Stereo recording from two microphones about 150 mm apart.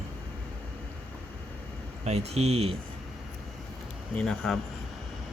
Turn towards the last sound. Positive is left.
turn(degrees=5)  # may be behind; listen again after turning